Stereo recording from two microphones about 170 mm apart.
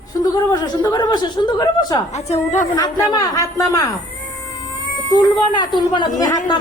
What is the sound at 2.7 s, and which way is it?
Speech, 20° left (ahead or behind).